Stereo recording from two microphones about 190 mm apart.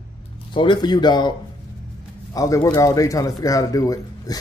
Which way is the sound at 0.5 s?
25° left (ahead or behind).